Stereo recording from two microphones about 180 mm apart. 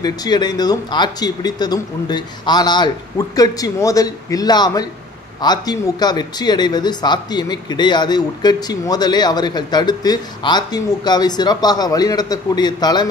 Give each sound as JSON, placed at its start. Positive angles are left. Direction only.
{"t": 0.0, "sound": "speech", "side_deg": 25}